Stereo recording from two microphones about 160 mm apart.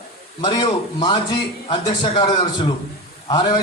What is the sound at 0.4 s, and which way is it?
A man's voice, 30° left (ahead or behind).